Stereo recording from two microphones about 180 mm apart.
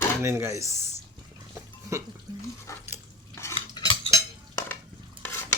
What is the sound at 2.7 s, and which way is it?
Dog, 15° left (ahead or behind).